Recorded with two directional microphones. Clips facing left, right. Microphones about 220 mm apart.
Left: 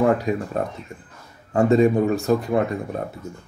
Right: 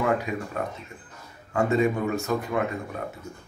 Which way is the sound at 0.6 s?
35° left (ahead or behind).